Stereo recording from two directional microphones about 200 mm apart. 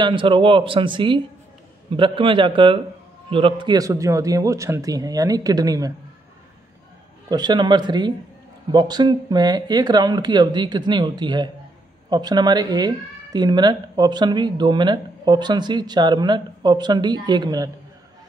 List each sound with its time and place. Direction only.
0.0 s a man's voice: 25° right (ahead or behind)
7.2 s speech: 20° right (ahead or behind)